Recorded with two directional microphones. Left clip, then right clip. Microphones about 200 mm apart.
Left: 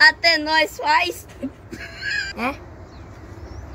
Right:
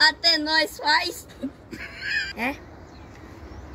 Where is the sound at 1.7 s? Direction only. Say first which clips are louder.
Left 2 dB; centre (ahead or behind).